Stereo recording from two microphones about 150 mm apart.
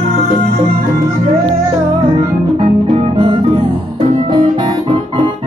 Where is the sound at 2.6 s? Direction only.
40° right (ahead or behind).